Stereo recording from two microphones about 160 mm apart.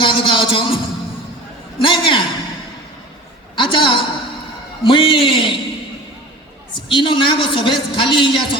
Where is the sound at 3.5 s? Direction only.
30° left (ahead or behind).